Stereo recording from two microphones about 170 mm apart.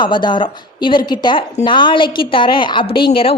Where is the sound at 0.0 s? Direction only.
25° left (ahead or behind).